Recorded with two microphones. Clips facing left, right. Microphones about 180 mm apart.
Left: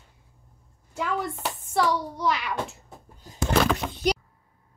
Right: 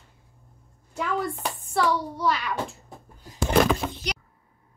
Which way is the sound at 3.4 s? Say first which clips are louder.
Right 2 dB; 5° right (ahead or behind).